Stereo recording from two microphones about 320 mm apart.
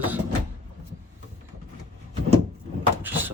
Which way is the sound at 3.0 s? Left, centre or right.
Centre.